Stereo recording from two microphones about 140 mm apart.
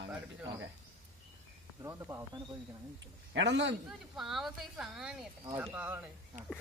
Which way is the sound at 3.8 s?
5° right (ahead or behind).